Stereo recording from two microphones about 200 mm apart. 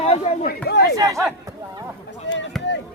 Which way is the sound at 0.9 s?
15° right (ahead or behind).